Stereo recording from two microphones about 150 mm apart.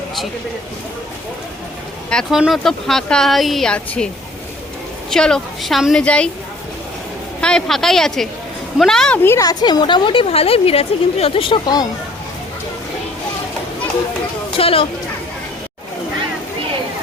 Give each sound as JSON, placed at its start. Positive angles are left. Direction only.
{"t": 2.0, "sound": "speech", "side_deg": 5}
{"t": 5.1, "sound": "speech", "side_deg": 5}
{"t": 7.4, "sound": "speech", "side_deg": 5}
{"t": 14.6, "sound": "speech", "side_deg": 40}